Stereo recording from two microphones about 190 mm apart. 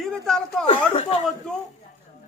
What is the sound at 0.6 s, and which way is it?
Speech, 35° left (ahead or behind).